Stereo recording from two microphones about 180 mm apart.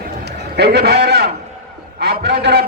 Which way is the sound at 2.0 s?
60° right (ahead or behind).